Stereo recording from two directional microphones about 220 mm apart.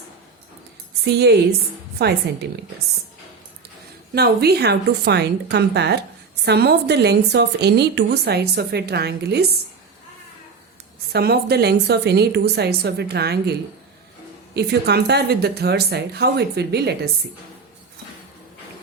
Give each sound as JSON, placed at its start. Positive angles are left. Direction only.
{"t": 1.0, "sound": "a woman's voice", "side_deg": -50}
{"t": 4.1, "sound": "a woman's voice", "side_deg": -45}
{"t": 11.1, "sound": "a woman's voice", "side_deg": -45}